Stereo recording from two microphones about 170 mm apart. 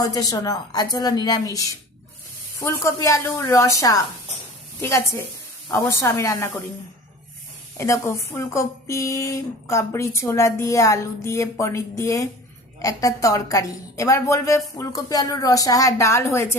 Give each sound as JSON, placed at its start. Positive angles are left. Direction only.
{"t": 0.0, "sound": "a woman's voice", "side_deg": 20}
{"t": 2.6, "sound": "speech", "side_deg": 15}
{"t": 7.8, "sound": "a woman's voice", "side_deg": 15}